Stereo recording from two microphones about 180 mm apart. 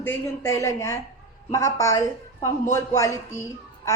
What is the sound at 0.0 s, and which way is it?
A woman's voice, 15° left (ahead or behind).